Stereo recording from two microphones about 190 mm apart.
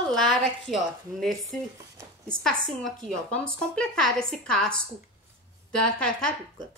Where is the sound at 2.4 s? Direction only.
5° left (ahead or behind).